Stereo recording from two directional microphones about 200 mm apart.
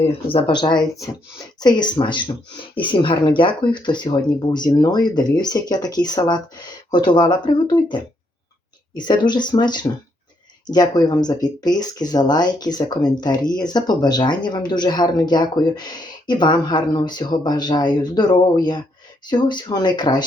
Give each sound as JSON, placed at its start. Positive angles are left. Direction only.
{"t": 0.0, "sound": "speech", "side_deg": 25}
{"t": 9.0, "sound": "speech", "side_deg": 20}